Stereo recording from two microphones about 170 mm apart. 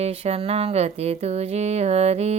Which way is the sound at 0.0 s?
35° right (ahead or behind).